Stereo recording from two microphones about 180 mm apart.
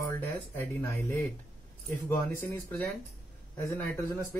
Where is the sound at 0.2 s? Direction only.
10° left (ahead or behind).